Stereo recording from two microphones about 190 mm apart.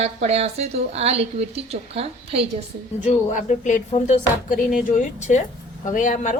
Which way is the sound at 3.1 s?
35° left (ahead or behind).